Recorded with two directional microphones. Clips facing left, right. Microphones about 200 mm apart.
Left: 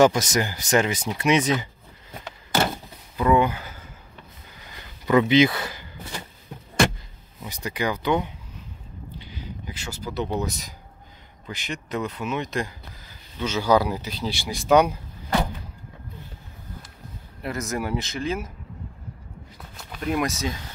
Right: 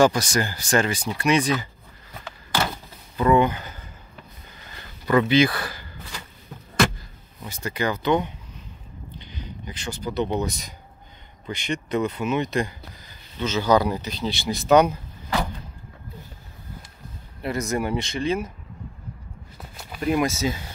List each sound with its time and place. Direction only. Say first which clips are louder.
0.0 s speech: left 1 dB; 20° left (ahead or behind)
3.2 s speech: right 1 dB; 5° left (ahead or behind)
4.6 s a sound: even; 15° left (ahead or behind)
7.4 s speech: right 1 dB; 15° left (ahead or behind)
9.2 s a sound: right 1 dB; 5° left (ahead or behind)
10.4 s speech: right 1 dB; centre (ahead or behind)
17.4 s speech: right 3 dB; centre (ahead or behind)
19.8 s speech: right 3 dB; 5° right (ahead or behind)